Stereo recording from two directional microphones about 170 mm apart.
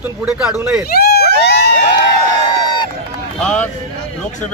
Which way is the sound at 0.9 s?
65° left (ahead or behind).